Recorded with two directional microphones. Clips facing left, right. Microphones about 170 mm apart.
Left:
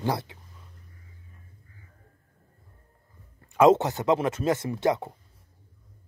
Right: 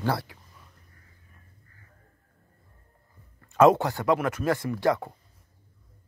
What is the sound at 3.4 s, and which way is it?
Speech, 15° left (ahead or behind).